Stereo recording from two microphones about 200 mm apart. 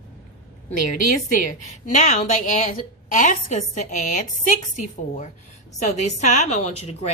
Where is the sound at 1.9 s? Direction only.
40° left (ahead or behind).